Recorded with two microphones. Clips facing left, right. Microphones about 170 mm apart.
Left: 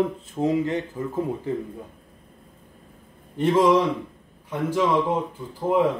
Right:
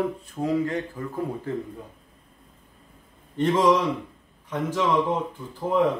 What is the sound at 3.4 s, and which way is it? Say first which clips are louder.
A man's voice: left 2 dB; 10° left (ahead or behind).